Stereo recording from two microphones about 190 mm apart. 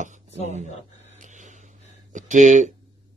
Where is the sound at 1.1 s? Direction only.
40° right (ahead or behind).